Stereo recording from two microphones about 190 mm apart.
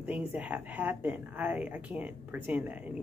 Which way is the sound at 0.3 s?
10° right (ahead or behind).